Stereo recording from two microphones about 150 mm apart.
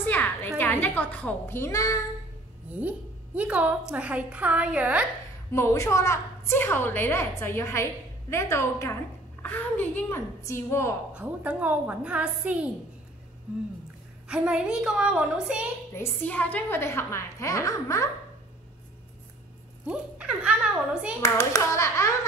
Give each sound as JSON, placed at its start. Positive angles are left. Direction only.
{"t": 0.0, "sound": "a sound", "side_deg": 10}
{"t": 0.6, "sound": "a woman's voice", "side_deg": 15}
{"t": 2.7, "sound": "a woman's voice", "side_deg": -10}
{"t": 5.5, "sound": "a woman's voice", "side_deg": 20}
{"t": 11.1, "sound": "a woman's voice", "side_deg": -10}
{"t": 14.2, "sound": "a woman's voice", "side_deg": -5}
{"t": 15.9, "sound": "a woman's voice", "side_deg": 15}
{"t": 19.9, "sound": "a woman's voice", "side_deg": -5}
{"t": 21.2, "sound": "a child's voice", "side_deg": 20}